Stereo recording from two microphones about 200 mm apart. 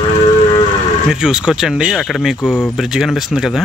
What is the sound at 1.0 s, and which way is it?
Speech, 5° right (ahead or behind).